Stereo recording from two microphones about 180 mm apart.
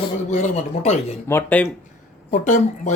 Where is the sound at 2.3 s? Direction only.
45° left (ahead or behind).